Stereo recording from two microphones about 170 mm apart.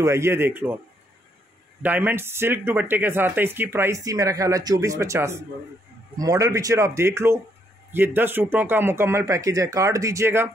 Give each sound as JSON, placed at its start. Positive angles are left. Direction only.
{"t": 0.0, "sound": "speech", "side_deg": -15}
{"t": 1.8, "sound": "a man's voice", "side_deg": -10}